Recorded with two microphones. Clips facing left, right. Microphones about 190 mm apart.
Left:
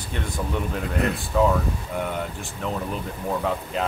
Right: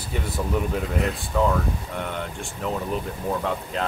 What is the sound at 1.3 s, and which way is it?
Speech, centre (ahead or behind).